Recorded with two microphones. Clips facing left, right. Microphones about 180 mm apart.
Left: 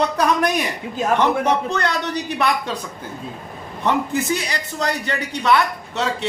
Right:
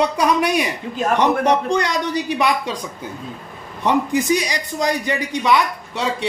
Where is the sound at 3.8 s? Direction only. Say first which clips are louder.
Right 2 dB; 15° right (ahead or behind).